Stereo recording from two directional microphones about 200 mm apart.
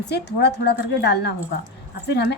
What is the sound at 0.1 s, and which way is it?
Speech, 55° left (ahead or behind).